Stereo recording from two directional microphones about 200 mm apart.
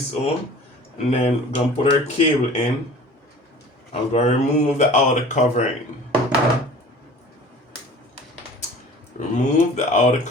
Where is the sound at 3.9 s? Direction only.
35° left (ahead or behind).